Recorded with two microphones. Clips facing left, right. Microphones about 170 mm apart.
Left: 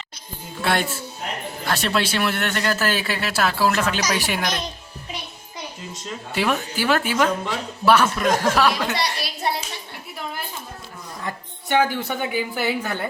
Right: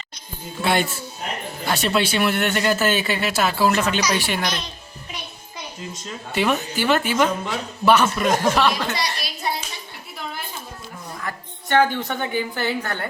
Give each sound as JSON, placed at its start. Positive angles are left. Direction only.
{"t": 0.6, "sound": "a woman's voice", "side_deg": 0}
{"t": 5.9, "sound": "a woman's voice", "side_deg": 0}
{"t": 9.0, "sound": "a woman's voice", "side_deg": 65}
{"t": 11.2, "sound": "a sound", "side_deg": 20}
{"t": 11.9, "sound": "speech", "side_deg": 10}